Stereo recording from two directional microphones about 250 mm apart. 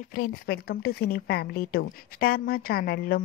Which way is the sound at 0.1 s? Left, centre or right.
Left.